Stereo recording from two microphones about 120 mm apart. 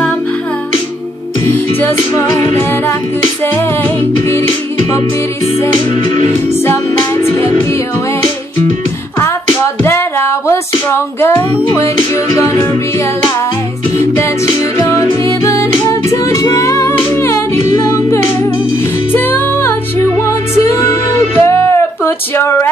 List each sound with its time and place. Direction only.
1.4 s music: 20° left (ahead or behind)
6.6 s music: 20° left (ahead or behind)
9.2 s a sound: 20° left (ahead or behind)
13.9 s music: 20° left (ahead or behind)
17.8 s humming: 20° left (ahead or behind)
19.1 s music: 15° left (ahead or behind)